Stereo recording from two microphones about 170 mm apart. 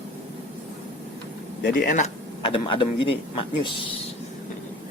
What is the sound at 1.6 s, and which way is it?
Speech, 55° left (ahead or behind).